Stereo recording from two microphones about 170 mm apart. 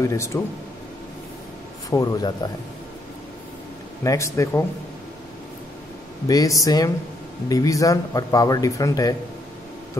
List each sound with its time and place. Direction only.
0.0 s speech: 15° left (ahead or behind)
1.9 s a man's voice: 20° left (ahead or behind)
4.0 s speech: 20° left (ahead or behind)
6.2 s a man's voice: 20° left (ahead or behind)